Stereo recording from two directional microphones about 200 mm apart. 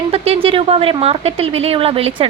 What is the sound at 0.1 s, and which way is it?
A woman's voice, 30° right (ahead or behind).